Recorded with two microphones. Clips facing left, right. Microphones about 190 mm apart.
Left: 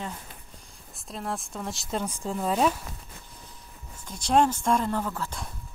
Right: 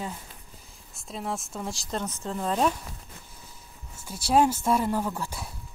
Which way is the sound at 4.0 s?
5° right (ahead or behind).